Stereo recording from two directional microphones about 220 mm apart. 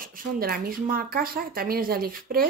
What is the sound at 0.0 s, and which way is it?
Speech, 40° right (ahead or behind).